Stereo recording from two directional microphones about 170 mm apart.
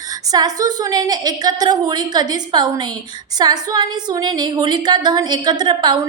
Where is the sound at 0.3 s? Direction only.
20° right (ahead or behind).